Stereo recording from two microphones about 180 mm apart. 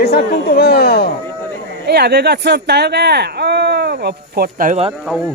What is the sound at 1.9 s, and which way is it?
Speech, 65° right (ahead or behind).